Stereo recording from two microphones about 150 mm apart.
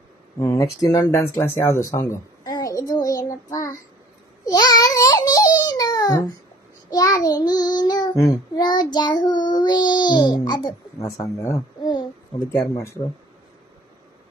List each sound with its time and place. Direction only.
0.4 s speech: 25° left (ahead or behind)
4.5 s a sound: 25° left (ahead or behind)
6.9 s child singing: 25° left (ahead or behind)
11.3 s a child's voice: 20° left (ahead or behind)
12.7 s child singing: 20° left (ahead or behind)